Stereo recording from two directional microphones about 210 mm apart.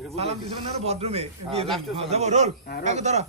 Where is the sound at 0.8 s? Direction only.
30° right (ahead or behind).